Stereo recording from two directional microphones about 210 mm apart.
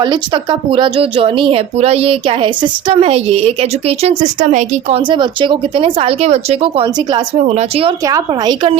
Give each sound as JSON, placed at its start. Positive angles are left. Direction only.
{"t": 0.7, "sound": "a woman's voice", "side_deg": -25}
{"t": 8.0, "sound": "a woman's voice", "side_deg": -20}